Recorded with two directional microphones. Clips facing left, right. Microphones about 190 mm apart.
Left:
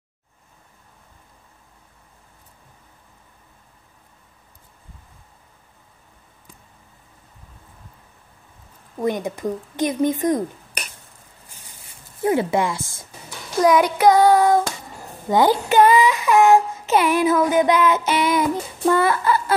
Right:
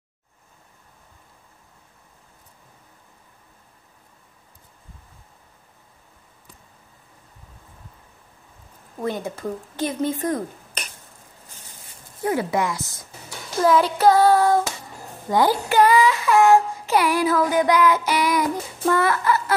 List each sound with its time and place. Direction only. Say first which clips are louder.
9.0 s speech: left 4 dB; 15° left (ahead or behind)
12.2 s speech: left 3 dB; 25° left (ahead or behind)
13.6 s speech: left 2 dB; 15° left (ahead or behind)
15.2 s child singing: left 2 dB; 20° left (ahead or behind)